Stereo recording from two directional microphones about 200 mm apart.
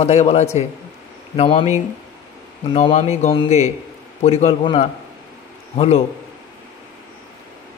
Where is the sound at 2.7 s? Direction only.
35° left (ahead or behind).